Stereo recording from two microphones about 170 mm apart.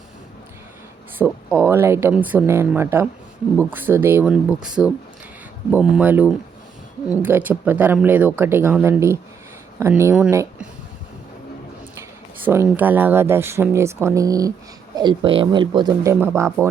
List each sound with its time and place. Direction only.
1.2 s speech: 10° right (ahead or behind)
12.5 s speech: 10° right (ahead or behind)